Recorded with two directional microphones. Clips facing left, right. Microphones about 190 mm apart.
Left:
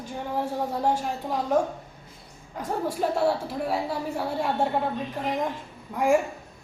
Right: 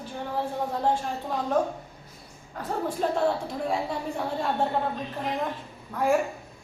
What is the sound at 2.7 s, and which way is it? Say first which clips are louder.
A woman's voice: left 1 dB; 10° left (ahead or behind).